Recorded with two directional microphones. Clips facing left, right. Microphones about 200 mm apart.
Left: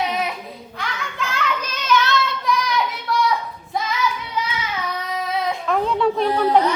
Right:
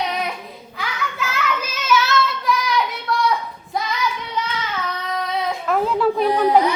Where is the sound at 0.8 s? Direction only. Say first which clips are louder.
Right 2 dB; 5° right (ahead or behind).